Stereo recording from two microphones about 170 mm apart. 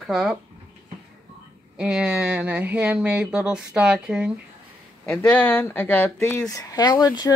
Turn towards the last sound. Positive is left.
turn(degrees=25)  # may be behind; listen again after turning